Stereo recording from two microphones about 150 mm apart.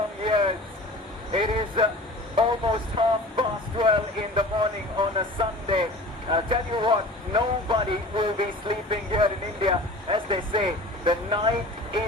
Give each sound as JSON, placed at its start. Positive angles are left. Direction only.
{"t": 0.3, "sound": "vehicle", "side_deg": -35}
{"t": 1.3, "sound": "speech", "side_deg": -35}